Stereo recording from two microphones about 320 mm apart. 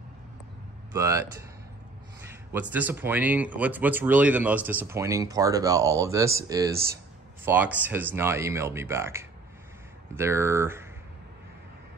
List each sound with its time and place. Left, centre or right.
0.9 s speech: centre
2.7 s speech: centre